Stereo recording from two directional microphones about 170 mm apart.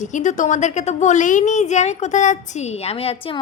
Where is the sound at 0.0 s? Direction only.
45° left (ahead or behind).